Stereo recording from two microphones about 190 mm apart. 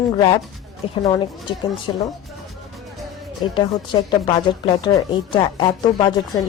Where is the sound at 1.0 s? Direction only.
20° left (ahead or behind).